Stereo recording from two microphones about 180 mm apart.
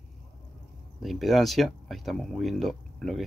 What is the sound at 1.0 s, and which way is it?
Speech, centre (ahead or behind).